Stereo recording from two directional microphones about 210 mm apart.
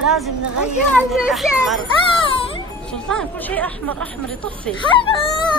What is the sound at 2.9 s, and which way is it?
Speech, 5° left (ahead or behind).